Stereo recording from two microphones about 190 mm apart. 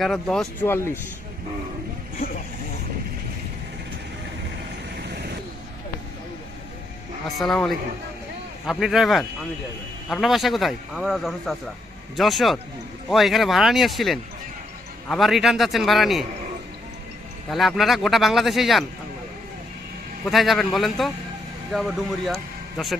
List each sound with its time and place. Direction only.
0.0 s a man's voice: centre (ahead or behind)
5.0 s vehicle: 60° right (ahead or behind)
7.2 s a man's voice: centre (ahead or behind)
17.5 s a man's voice: centre (ahead or behind)
20.2 s a man's voice: centre (ahead or behind)